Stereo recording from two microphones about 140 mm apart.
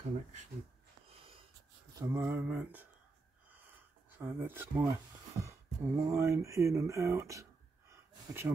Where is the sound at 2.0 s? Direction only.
15° right (ahead or behind).